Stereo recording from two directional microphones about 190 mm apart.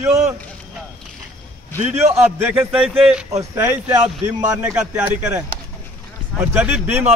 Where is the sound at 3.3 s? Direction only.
15° right (ahead or behind).